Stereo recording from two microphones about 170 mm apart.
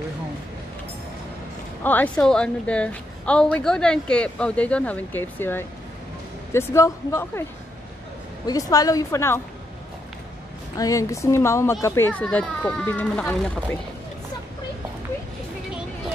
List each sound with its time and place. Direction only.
1.8 s a woman's voice: 10° left (ahead or behind)
8.5 s a woman's voice: 20° left (ahead or behind)
10.8 s a woman's voice: 20° left (ahead or behind)